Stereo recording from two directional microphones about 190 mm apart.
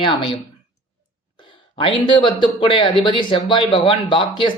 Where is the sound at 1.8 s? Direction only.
25° left (ahead or behind).